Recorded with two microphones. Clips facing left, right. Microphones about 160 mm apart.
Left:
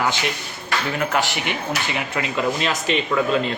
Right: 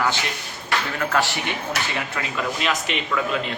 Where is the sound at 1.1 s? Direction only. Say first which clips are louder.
Right 1 dB; 15° left (ahead or behind).